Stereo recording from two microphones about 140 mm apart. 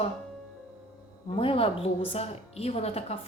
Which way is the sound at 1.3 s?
40° left (ahead or behind).